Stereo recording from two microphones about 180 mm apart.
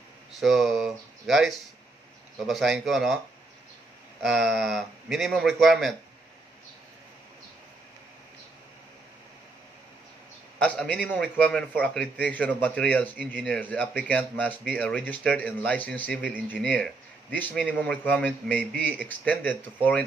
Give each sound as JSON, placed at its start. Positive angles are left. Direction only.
{"t": 0.4, "sound": "a man's voice", "side_deg": 0}
{"t": 4.2, "sound": "a man's voice", "side_deg": 0}
{"t": 10.6, "sound": "a man's voice", "side_deg": 5}